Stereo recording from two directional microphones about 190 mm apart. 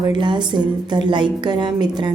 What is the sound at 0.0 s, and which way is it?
A woman's voice, 25° right (ahead or behind).